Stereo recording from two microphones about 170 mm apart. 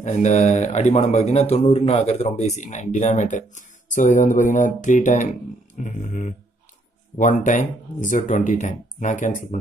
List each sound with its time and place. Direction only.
0.0 s a man's voice: 45° left (ahead or behind)